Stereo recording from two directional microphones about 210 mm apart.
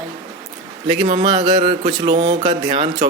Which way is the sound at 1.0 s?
25° right (ahead or behind).